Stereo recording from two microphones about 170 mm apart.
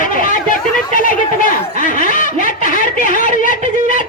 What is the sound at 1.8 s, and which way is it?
Snicker, 50° left (ahead or behind).